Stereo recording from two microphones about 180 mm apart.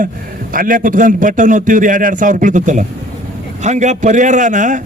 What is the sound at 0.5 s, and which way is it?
A man's voice, 50° right (ahead or behind).